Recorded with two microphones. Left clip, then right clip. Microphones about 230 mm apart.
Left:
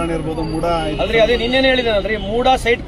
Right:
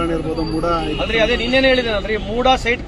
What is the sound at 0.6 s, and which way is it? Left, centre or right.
Speech, left.